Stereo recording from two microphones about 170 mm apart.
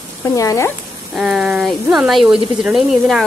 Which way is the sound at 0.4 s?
20° left (ahead or behind).